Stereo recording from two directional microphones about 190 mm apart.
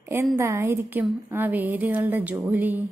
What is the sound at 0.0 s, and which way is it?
A woman's voice, 10° right (ahead or behind).